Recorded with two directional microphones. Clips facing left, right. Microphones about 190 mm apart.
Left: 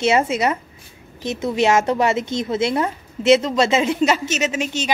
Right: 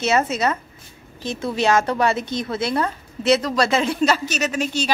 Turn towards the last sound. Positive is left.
turn(degrees=20)  # may be behind; listen again after turning